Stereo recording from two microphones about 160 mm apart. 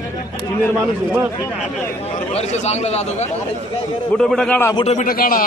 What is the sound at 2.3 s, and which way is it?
Speech, 45° left (ahead or behind).